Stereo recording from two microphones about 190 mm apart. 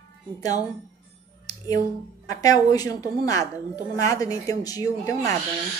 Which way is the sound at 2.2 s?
20° left (ahead or behind).